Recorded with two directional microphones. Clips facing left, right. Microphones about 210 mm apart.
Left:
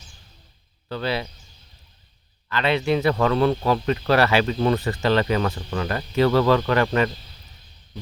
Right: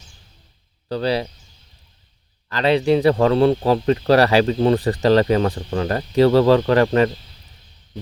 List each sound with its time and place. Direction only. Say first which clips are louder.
0.9 s speech: right 5 dB; 35° right (ahead or behind)
2.5 s speech: right 5 dB; 35° right (ahead or behind)